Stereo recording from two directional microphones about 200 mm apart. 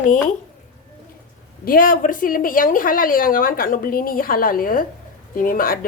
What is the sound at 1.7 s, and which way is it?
A woman's voice, 45° left (ahead or behind).